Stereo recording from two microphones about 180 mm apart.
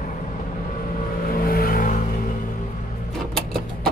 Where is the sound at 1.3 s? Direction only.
55° left (ahead or behind).